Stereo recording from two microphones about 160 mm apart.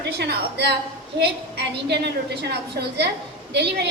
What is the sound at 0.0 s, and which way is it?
A woman's voice, 90° right.